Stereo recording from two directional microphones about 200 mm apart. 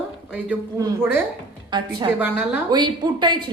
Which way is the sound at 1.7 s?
25° right (ahead or behind).